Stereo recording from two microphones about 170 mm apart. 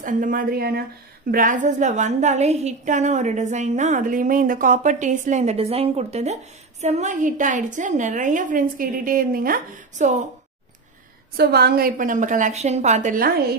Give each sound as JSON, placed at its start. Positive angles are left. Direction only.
{"t": 0.0, "sound": "a woman's voice", "side_deg": -50}
{"t": 1.3, "sound": "a woman's voice", "side_deg": -50}
{"t": 11.3, "sound": "a woman's voice", "side_deg": -70}